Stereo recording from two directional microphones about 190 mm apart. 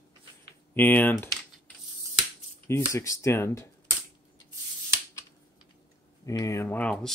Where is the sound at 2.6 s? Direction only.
15° left (ahead or behind).